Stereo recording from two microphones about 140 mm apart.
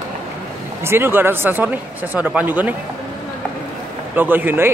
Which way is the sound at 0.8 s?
15° right (ahead or behind).